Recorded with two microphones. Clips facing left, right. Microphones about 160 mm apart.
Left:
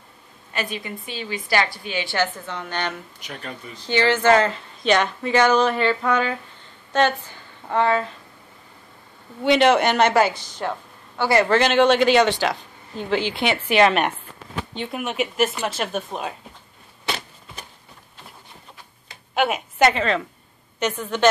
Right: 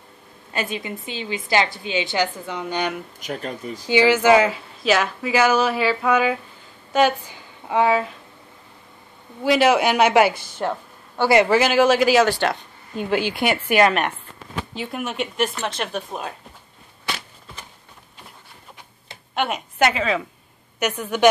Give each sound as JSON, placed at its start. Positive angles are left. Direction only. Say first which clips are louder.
{"t": 0.5, "sound": "a woman's voice", "louder": "right 2 dB", "side_deg": -25}
{"t": 3.2, "sound": "speech", "louder": "right 6 dB", "side_deg": -45}
{"t": 3.7, "sound": "a woman's voice", "louder": "right 3 dB", "side_deg": -10}
{"t": 9.4, "sound": "speech", "louder": "even", "side_deg": -5}
{"t": 10.3, "sound": "speech", "louder": "right 1 dB", "side_deg": -55}
{"t": 10.6, "sound": "a sound", "louder": "right 2 dB", "side_deg": -10}
{"t": 11.2, "sound": "a woman's voice", "louder": "right 3 dB", "side_deg": -20}
{"t": 11.5, "sound": "speech", "louder": "even", "side_deg": -5}
{"t": 12.9, "sound": "speech", "louder": "right 1 dB", "side_deg": -15}
{"t": 13.2, "sound": "a woman's voice", "louder": "right 1 dB", "side_deg": 25}
{"t": 13.5, "sound": "speech", "louder": "even", "side_deg": -10}
{"t": 19.3, "sound": "a woman's voice", "louder": "left 2 dB", "side_deg": 5}